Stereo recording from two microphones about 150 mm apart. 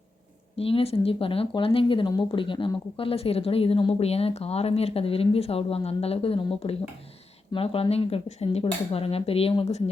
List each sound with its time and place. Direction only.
0.5 s speech: 40° left (ahead or behind)